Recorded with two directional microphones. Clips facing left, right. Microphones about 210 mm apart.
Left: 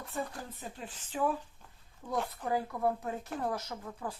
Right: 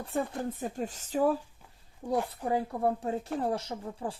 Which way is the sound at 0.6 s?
45° right (ahead or behind).